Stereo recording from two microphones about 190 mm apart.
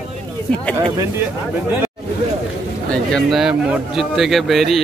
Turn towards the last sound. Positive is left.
turn(degrees=0)  # may be behind; listen again after turning